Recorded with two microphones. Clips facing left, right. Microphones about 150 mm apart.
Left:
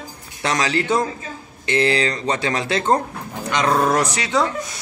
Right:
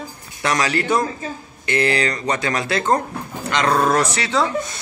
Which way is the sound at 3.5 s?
10° left (ahead or behind).